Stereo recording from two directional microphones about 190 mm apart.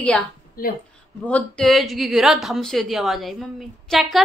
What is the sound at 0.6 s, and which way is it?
Speech, 50° left (ahead or behind).